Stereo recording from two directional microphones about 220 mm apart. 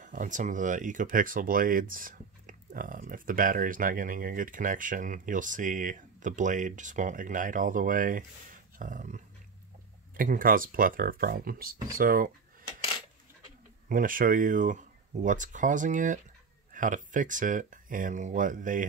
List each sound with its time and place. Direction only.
0.0 s speech: 35° right (ahead or behind)
13.8 s speech: 40° right (ahead or behind)